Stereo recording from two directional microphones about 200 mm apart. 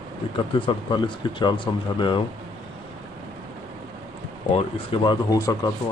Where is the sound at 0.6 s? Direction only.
25° left (ahead or behind).